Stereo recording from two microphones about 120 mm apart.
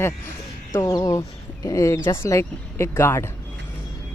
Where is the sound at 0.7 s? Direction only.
25° left (ahead or behind).